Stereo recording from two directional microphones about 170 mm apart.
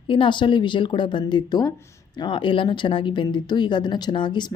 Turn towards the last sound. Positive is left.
turn(degrees=25)  # may be behind; listen again after turning